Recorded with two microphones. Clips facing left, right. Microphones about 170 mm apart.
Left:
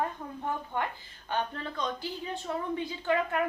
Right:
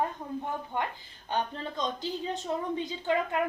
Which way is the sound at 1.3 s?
20° right (ahead or behind).